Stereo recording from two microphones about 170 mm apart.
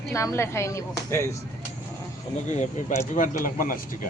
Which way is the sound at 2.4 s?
45° left (ahead or behind).